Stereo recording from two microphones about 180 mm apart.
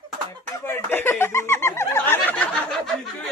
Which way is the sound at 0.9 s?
10° left (ahead or behind).